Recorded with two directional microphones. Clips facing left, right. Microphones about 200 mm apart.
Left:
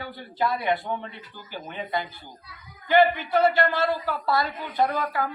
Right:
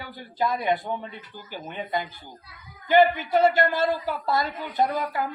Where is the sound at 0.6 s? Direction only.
15° right (ahead or behind).